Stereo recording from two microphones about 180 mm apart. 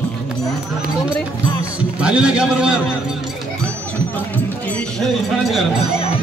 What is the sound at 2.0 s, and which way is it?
Speech, 5° right (ahead or behind).